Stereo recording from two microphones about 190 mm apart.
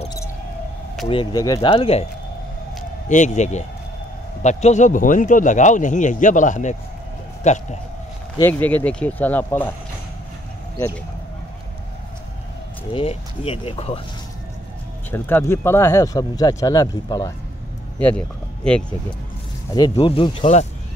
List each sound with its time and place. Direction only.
1.0 s speech: 25° left (ahead or behind)
1.7 s a man's voice: 30° left (ahead or behind)
3.1 s a man's voice: 40° left (ahead or behind)
8.4 s speech: 10° left (ahead or behind)
12.9 s speech: 30° left (ahead or behind)
15.0 s speech: 10° left (ahead or behind)
17.9 s speech: 5° left (ahead or behind)
19.7 s speech: 25° left (ahead or behind)